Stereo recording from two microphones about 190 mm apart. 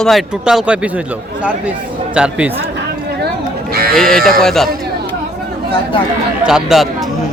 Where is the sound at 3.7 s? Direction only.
55° right (ahead or behind).